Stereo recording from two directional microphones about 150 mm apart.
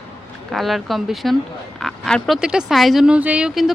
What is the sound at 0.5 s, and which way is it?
Speech, centre (ahead or behind).